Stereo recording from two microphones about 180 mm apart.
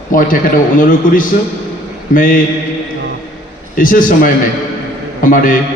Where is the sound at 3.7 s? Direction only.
50° left (ahead or behind).